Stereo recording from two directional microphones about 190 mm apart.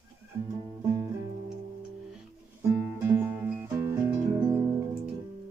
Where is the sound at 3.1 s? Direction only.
10° right (ahead or behind).